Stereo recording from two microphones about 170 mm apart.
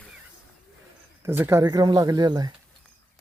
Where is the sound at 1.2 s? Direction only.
15° right (ahead or behind).